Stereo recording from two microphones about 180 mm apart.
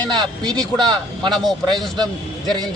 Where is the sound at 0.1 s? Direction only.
25° right (ahead or behind).